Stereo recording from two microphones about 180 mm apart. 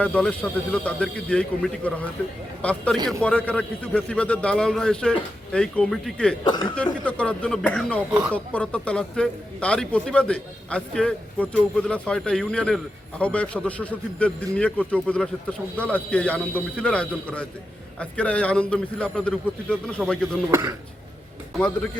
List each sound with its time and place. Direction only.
0.0 s a man's voice: 5° left (ahead or behind)
6.4 s speech: 25° left (ahead or behind)
6.7 s a man's voice: 5° left (ahead or behind)
20.5 s speech: 15° right (ahead or behind)